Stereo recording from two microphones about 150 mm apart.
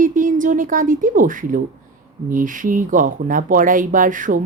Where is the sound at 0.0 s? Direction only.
60° right (ahead or behind).